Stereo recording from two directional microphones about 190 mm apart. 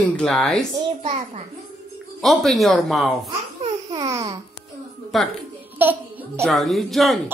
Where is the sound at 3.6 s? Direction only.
20° right (ahead or behind).